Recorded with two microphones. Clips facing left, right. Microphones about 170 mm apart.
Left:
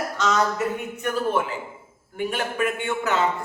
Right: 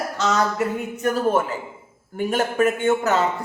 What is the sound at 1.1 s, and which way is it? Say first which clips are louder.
A man's voice: right 2 dB; 40° right (ahead or behind).